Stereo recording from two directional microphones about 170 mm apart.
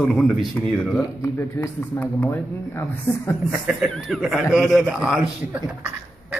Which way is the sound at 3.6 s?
5° right (ahead or behind).